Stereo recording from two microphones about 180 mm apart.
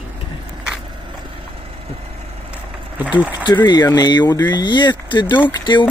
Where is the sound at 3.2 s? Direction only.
10° right (ahead or behind).